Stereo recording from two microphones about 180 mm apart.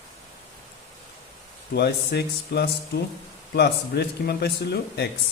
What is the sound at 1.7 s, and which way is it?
Speech, 65° left (ahead or behind).